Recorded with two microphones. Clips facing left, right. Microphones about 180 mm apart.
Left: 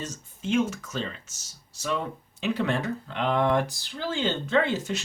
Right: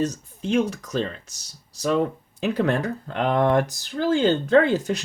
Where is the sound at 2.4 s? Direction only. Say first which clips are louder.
Right 4 dB; 45° right (ahead or behind).